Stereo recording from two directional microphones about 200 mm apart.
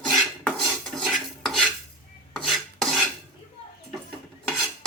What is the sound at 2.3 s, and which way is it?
Filing, centre (ahead or behind).